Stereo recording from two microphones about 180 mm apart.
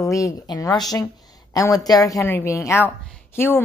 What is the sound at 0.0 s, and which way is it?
A woman's voice, 15° left (ahead or behind).